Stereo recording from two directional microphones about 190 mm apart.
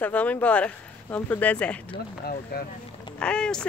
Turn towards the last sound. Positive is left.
turn(degrees=5)  # may be behind; listen again after turning